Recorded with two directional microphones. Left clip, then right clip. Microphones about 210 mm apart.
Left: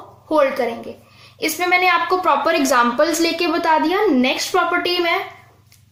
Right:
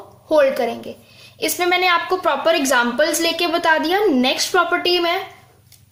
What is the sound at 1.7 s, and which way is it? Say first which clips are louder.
A woman's voice: left 2 dB; 15° right (ahead or behind).